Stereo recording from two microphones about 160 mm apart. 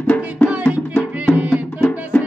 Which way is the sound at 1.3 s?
10° right (ahead or behind).